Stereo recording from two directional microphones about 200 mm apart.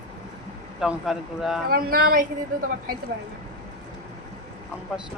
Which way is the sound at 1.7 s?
50° right (ahead or behind).